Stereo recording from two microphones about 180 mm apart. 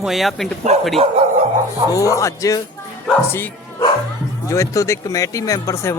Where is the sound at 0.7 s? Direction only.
35° right (ahead or behind).